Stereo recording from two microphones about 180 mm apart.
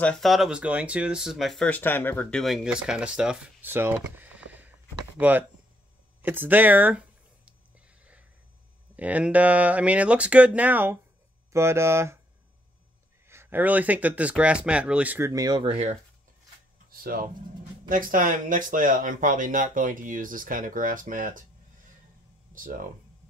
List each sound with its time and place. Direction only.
0.0 s speech: 5° left (ahead or behind)
6.2 s a sound: 10° right (ahead or behind)
8.0 s snort: 5° right (ahead or behind)
8.9 s speech: 10° right (ahead or behind)
13.3 s speech: 10° right (ahead or behind); by 16.0 s 35° right (ahead or behind)
16.9 s speech: 55° right (ahead or behind)
22.5 s speech: 50° right (ahead or behind)